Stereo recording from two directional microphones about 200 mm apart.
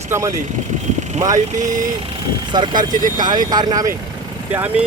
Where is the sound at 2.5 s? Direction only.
20° right (ahead or behind).